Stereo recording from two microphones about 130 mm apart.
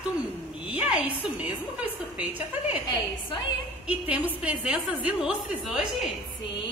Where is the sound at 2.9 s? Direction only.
40° left (ahead or behind).